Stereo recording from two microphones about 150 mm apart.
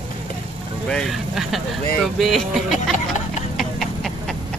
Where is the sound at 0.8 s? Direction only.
Centre (ahead or behind).